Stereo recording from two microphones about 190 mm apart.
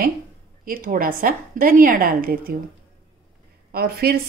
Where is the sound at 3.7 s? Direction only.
55° right (ahead or behind).